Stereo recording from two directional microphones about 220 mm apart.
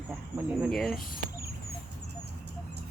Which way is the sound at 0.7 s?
Centre (ahead or behind).